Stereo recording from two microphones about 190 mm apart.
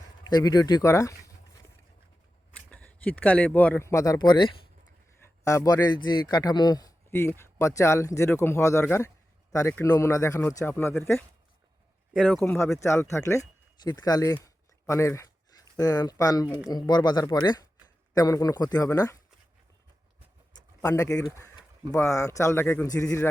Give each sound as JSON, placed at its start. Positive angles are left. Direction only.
{"t": 0.3, "sound": "speech", "side_deg": 20}
{"t": 2.6, "sound": "a man's voice", "side_deg": 5}
{"t": 14.4, "sound": "a sound", "side_deg": 15}
{"t": 15.8, "sound": "speech", "side_deg": 20}
{"t": 20.8, "sound": "a man's voice", "side_deg": 15}